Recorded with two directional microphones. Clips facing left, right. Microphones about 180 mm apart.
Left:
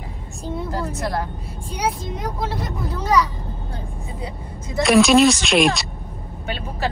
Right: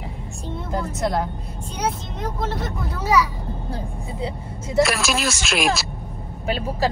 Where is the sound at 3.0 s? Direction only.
10° right (ahead or behind).